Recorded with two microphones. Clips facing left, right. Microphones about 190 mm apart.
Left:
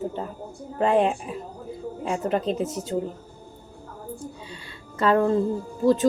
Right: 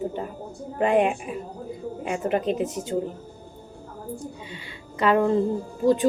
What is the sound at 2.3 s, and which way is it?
Speech, 15° right (ahead or behind).